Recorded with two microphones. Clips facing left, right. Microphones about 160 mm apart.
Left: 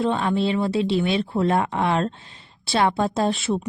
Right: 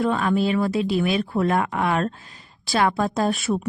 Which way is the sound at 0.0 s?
30° left (ahead or behind).